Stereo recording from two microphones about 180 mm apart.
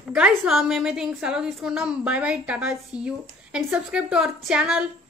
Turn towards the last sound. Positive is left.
turn(degrees=-5)  # may be behind; listen again after turning